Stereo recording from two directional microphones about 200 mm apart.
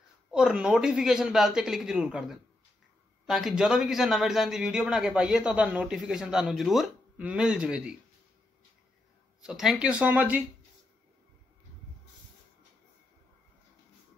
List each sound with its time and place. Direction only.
0.3 s a man's voice: 5° right (ahead or behind)
9.4 s a man's voice: 5° right (ahead or behind)